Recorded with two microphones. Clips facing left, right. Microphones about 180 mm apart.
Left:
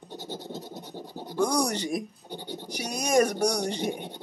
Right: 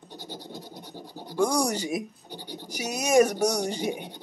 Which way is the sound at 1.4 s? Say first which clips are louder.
Right 1 dB; 10° right (ahead or behind).